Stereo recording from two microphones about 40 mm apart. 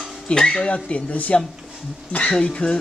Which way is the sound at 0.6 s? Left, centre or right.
Left.